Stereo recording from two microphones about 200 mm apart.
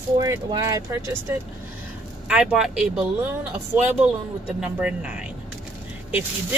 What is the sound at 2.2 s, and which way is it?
Speech, 5° right (ahead or behind).